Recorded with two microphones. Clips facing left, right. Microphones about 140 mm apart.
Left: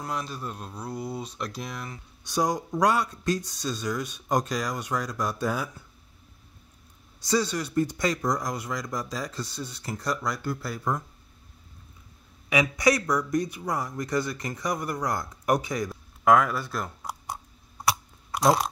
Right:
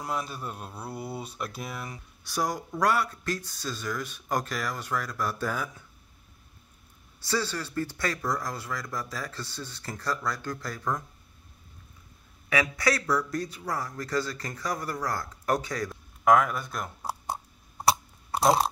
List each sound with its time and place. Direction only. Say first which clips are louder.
0.0 s speech: even; 5° right (ahead or behind)
2.2 s speech: left 4 dB; 20° left (ahead or behind)
7.2 s speech: left 4 dB; 15° left (ahead or behind)
12.4 s speech: left 4 dB; 15° left (ahead or behind)
16.3 s speech: left 1 dB; centre (ahead or behind)
17.0 s a sound: right 3 dB; 30° right (ahead or behind)
18.3 s chewing: left 1 dB; 30° right (ahead or behind)